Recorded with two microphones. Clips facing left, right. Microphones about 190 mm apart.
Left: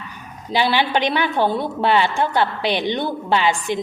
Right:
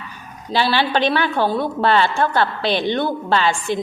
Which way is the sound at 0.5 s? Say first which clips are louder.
Even; 15° left (ahead or behind).